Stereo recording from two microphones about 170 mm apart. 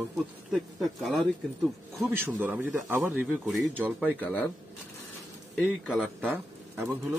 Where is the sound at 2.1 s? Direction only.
10° right (ahead or behind).